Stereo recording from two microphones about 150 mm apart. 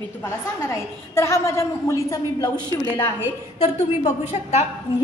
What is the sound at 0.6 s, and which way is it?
A woman's voice, 15° left (ahead or behind).